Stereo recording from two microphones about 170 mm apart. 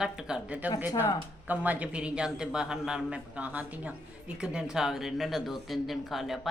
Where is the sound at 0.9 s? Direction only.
20° left (ahead or behind).